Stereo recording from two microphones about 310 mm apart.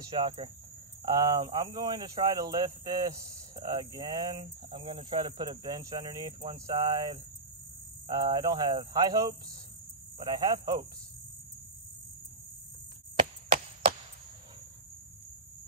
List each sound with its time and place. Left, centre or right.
0.0 s speech: centre
13.1 s chop: centre